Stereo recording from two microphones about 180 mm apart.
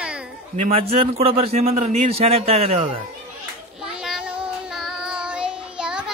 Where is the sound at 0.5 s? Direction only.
35° right (ahead or behind).